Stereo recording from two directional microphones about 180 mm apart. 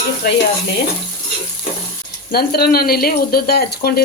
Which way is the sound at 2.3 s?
60° left (ahead or behind).